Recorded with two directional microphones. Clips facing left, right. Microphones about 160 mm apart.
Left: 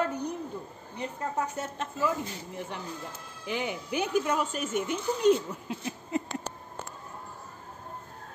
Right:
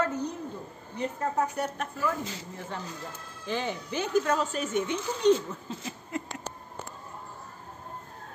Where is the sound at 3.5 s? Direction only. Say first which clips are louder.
Even; 15° left (ahead or behind).